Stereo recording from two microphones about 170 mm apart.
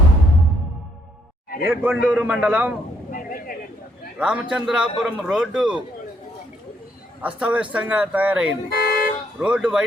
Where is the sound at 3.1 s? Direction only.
55° left (ahead or behind).